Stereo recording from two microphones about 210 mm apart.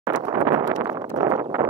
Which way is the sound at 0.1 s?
15° right (ahead or behind).